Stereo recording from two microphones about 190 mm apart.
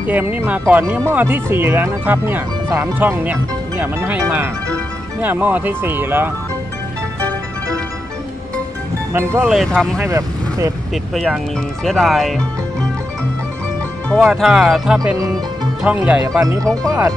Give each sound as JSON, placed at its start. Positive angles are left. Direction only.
{"t": 0.0, "sound": "speech", "side_deg": -10}
{"t": 9.1, "sound": "speech", "side_deg": -15}
{"t": 9.5, "sound": "speech", "side_deg": 0}
{"t": 10.0, "sound": "speech", "side_deg": -15}
{"t": 11.1, "sound": "speech", "side_deg": 0}
{"t": 14.0, "sound": "speech", "side_deg": 0}
{"t": 15.1, "sound": "speech", "side_deg": -20}
{"t": 15.8, "sound": "speech", "side_deg": -5}